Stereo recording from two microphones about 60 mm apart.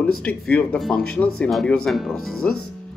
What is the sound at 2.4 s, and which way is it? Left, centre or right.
Speech, centre.